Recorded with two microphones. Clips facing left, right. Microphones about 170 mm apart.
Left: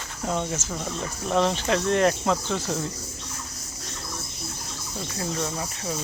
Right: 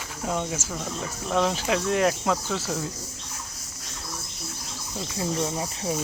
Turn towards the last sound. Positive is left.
turn(degrees=-20)  # may be behind; listen again after turning